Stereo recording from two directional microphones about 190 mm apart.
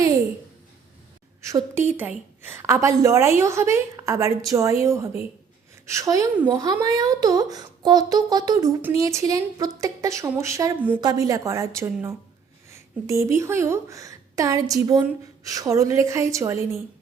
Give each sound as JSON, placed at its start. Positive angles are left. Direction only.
{"t": 1.4, "sound": "a woman's voice", "side_deg": -15}